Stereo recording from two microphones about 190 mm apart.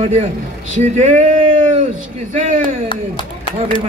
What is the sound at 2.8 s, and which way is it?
Speech, 25° left (ahead or behind).